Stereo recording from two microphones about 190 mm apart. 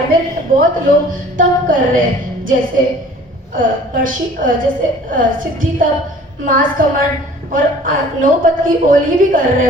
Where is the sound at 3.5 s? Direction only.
45° right (ahead or behind).